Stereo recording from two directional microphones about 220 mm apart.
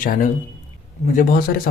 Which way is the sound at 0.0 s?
40° left (ahead or behind).